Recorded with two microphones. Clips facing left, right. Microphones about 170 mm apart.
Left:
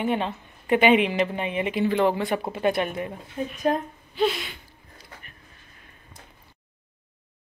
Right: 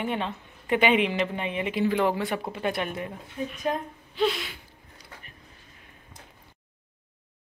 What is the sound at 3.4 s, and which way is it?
Speech, 45° left (ahead or behind).